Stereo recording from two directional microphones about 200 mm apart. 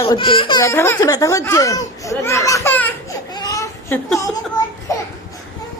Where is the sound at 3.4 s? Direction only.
15° left (ahead or behind).